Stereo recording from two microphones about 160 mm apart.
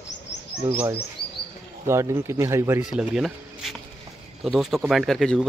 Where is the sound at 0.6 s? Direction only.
15° right (ahead or behind).